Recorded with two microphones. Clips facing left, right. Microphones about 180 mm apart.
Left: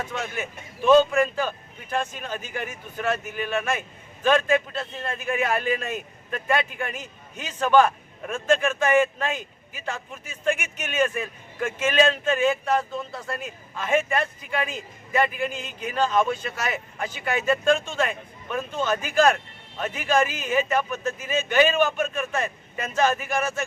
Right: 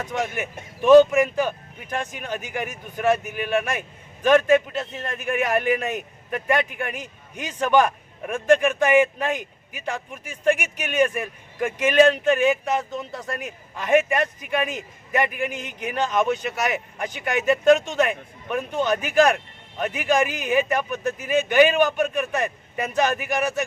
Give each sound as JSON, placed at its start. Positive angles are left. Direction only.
{"t": 0.1, "sound": "a man's voice", "side_deg": -15}